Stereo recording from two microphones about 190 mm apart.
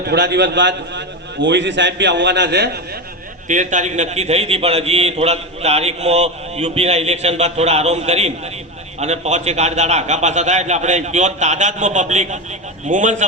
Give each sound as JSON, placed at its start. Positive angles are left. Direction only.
{"t": 0.1, "sound": "a man's voice", "side_deg": -65}
{"t": 3.5, "sound": "a man's voice", "side_deg": -40}